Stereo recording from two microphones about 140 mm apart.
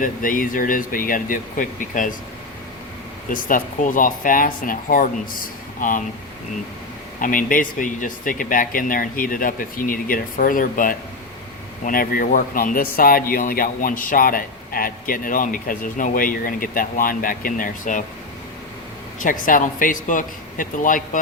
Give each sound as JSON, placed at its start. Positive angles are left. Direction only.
{"t": 0.0, "sound": "speech", "side_deg": 75}
{"t": 3.2, "sound": "speech", "side_deg": 75}
{"t": 7.2, "sound": "speech", "side_deg": 75}
{"t": 11.9, "sound": "speech", "side_deg": 90}
{"t": 19.2, "sound": "speech", "side_deg": 70}